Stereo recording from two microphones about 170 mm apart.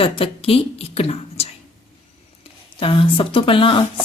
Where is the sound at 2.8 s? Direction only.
30° left (ahead or behind).